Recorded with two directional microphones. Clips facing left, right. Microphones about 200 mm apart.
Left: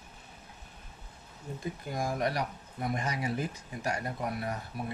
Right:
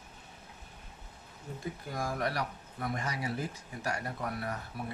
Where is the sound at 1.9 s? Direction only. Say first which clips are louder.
Left 3 dB; 15° left (ahead or behind).